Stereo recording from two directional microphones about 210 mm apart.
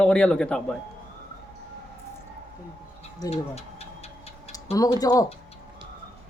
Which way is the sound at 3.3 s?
30° left (ahead or behind).